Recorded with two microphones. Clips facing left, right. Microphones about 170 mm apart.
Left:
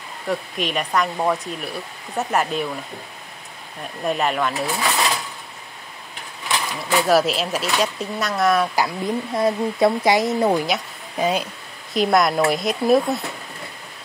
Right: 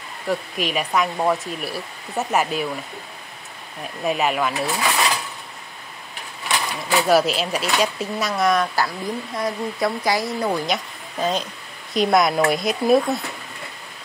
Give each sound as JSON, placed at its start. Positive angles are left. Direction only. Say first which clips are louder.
{"t": 0.3, "sound": "speech", "louder": "even", "side_deg": -5}
{"t": 4.0, "sound": "speech", "louder": "even", "side_deg": -5}
{"t": 6.9, "sound": "speech", "louder": "even", "side_deg": 0}
{"t": 8.7, "sound": "speech", "louder": "left 2 dB", "side_deg": 20}
{"t": 10.7, "sound": "speech", "louder": "left 1 dB", "side_deg": 10}